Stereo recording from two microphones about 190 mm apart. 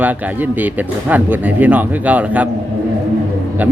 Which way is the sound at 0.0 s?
10° right (ahead or behind).